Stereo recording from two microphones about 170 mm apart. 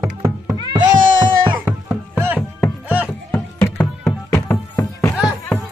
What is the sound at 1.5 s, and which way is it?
Music, 10° right (ahead or behind).